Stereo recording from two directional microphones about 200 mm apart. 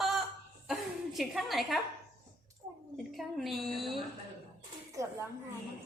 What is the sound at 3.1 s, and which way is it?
Speech, centre (ahead or behind).